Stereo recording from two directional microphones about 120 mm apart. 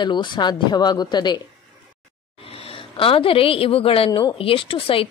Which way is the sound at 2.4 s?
50° left (ahead or behind).